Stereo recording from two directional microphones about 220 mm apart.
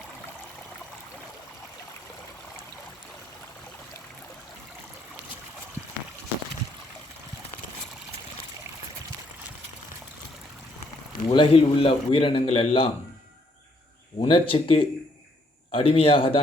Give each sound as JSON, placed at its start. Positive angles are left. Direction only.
{"t": 11.3, "sound": "a man's voice", "side_deg": 25}
{"t": 14.2, "sound": "a man's voice", "side_deg": 25}